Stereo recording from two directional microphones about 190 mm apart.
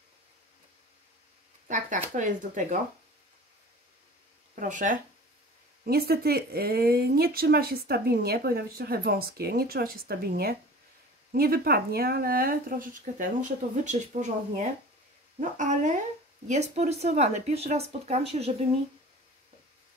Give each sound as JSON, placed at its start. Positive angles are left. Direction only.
{"t": 1.7, "sound": "speech", "side_deg": -40}
{"t": 4.6, "sound": "speech", "side_deg": -45}
{"t": 5.9, "sound": "speech", "side_deg": -55}